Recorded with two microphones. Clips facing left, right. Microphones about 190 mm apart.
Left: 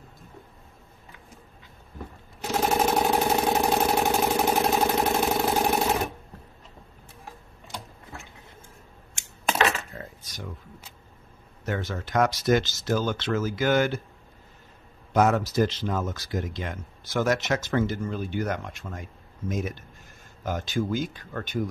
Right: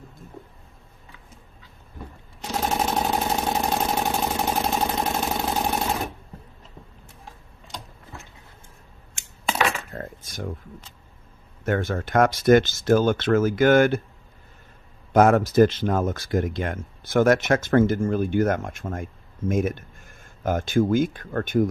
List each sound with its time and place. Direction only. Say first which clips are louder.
2.4 s vehicle: left 2 dB; 5° left (ahead or behind)
9.9 s a sound: right 6 dB; 50° right (ahead or behind)
11.6 s speech: right 6 dB; 55° right (ahead or behind)
15.1 s speech: right 6 dB; 55° right (ahead or behind)